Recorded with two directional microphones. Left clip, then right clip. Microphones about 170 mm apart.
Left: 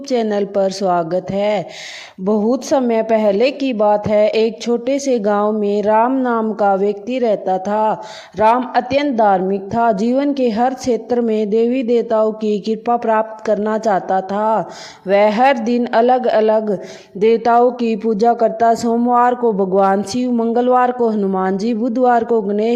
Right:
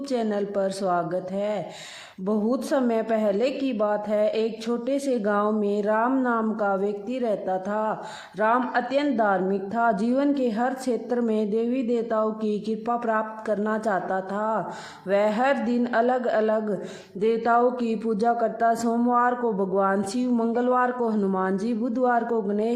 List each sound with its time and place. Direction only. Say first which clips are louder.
0.1 s a woman's voice: left 10 dB; 35° left (ahead or behind)